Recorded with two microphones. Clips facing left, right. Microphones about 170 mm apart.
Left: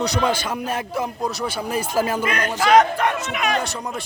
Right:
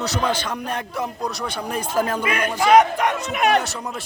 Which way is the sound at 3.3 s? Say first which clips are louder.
Right 4 dB; 60° right (ahead or behind).